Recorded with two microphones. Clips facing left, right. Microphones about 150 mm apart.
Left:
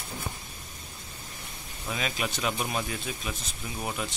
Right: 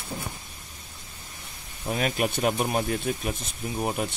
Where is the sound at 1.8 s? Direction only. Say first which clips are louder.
Right 6 dB; 45° right (ahead or behind).